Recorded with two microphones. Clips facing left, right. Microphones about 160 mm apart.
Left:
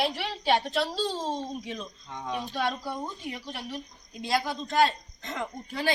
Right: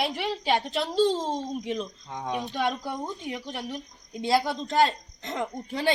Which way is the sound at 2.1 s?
40° right (ahead or behind).